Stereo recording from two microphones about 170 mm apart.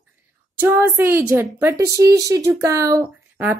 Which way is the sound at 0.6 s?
10° right (ahead or behind).